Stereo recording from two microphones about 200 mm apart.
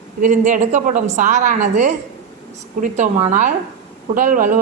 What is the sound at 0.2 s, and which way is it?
A woman's voice, 40° right (ahead or behind).